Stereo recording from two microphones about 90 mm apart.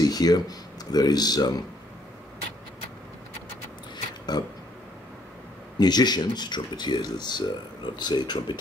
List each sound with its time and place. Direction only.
0.0 s speech: 45° left (ahead or behind)
4.3 s speech: 50° left (ahead or behind)
5.8 s speech: 50° left (ahead or behind)